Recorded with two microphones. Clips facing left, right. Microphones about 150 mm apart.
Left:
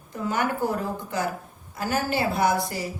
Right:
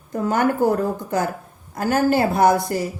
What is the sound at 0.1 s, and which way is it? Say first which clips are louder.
Speech: right 6 dB; 45° right (ahead or behind).